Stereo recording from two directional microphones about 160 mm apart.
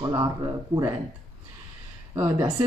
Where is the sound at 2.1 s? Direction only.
20° right (ahead or behind).